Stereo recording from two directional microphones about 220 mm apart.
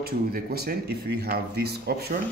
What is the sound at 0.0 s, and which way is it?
Speech, 45° right (ahead or behind).